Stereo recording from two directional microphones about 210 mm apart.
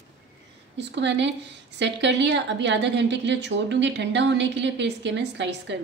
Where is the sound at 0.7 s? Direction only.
55° right (ahead or behind).